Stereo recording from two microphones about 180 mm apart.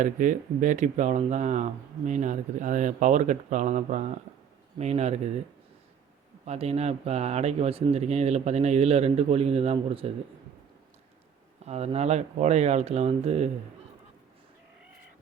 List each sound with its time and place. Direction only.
0.0 s speech: 45° right (ahead or behind)
6.4 s speech: 35° right (ahead or behind)
11.6 s speech: 35° right (ahead or behind)